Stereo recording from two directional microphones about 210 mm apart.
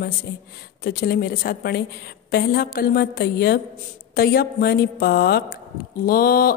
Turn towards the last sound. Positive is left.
turn(degrees=45)  # may be behind; listen again after turning